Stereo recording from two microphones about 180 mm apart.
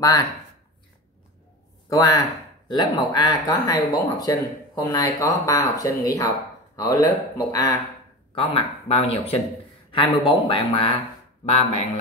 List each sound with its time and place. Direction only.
0.0 s speech: 20° left (ahead or behind)
1.9 s speech: 20° left (ahead or behind)
8.4 s speech: 30° left (ahead or behind)